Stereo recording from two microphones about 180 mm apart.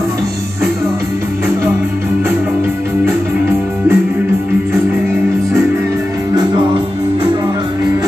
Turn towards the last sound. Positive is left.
turn(degrees=-25)  # may be behind; listen again after turning